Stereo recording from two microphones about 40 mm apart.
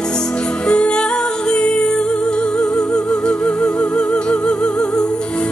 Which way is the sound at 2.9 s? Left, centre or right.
Centre.